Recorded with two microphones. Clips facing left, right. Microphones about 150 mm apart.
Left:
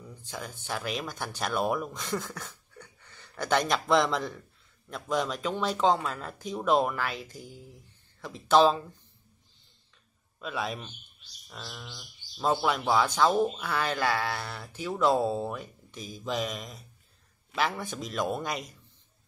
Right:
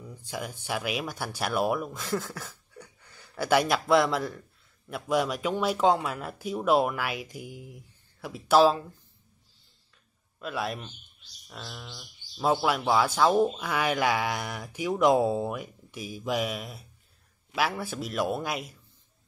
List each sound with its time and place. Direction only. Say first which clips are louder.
0.1 s speech: right 4 dB; 10° right (ahead or behind)
10.4 s a man's voice: right 1 dB; centre (ahead or behind)